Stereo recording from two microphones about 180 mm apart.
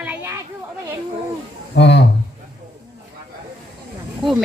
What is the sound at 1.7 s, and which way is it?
Speech, 70° left (ahead or behind).